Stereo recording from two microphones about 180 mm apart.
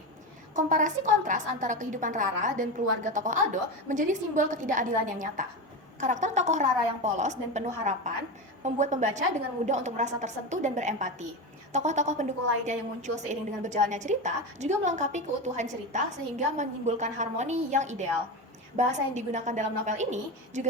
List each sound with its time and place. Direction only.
0.5 s a woman's voice: 45° right (ahead or behind)